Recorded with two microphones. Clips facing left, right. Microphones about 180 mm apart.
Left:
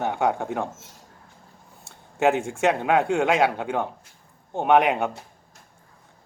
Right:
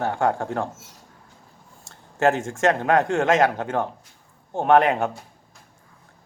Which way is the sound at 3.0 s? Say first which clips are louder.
Even; 15° left (ahead or behind).